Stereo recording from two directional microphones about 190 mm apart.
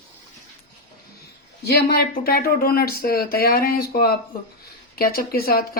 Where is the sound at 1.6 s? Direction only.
55° left (ahead or behind).